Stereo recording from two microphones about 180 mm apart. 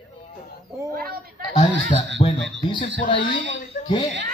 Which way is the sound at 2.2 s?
35° left (ahead or behind).